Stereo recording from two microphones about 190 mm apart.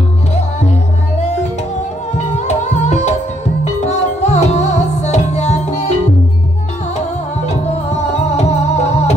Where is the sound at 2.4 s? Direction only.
35° left (ahead or behind).